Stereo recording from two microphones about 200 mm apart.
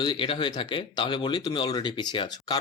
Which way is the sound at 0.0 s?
25° left (ahead or behind).